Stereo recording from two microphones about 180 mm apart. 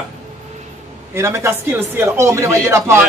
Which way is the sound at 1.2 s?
15° right (ahead or behind).